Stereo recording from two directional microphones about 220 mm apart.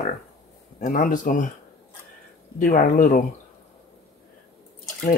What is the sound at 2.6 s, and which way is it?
Speech, 35° left (ahead or behind).